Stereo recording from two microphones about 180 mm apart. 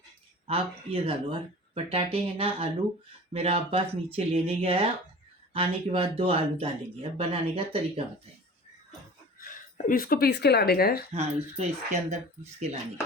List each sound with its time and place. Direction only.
0.4 s speech: 30° right (ahead or behind)
9.4 s speech: 50° left (ahead or behind)
11.1 s speech: 40° right (ahead or behind)